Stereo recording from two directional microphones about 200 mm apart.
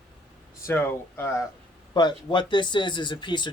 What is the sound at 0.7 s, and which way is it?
Speech, 10° left (ahead or behind).